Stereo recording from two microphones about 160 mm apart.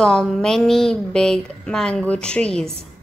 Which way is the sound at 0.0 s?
5° left (ahead or behind).